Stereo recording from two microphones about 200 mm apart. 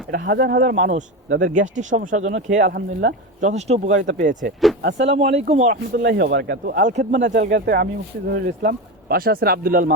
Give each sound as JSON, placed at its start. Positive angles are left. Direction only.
{"t": 0.1, "sound": "speech", "side_deg": -55}
{"t": 3.5, "sound": "speech", "side_deg": -35}
{"t": 4.8, "sound": "speech", "side_deg": -60}
{"t": 5.1, "sound": "speech", "side_deg": -30}
{"t": 6.0, "sound": "speech", "side_deg": -50}
{"t": 6.8, "sound": "speech", "side_deg": -40}
{"t": 7.3, "sound": "speech", "side_deg": -55}